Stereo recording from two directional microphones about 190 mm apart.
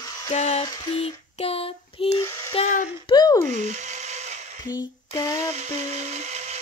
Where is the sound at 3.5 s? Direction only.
40° right (ahead or behind).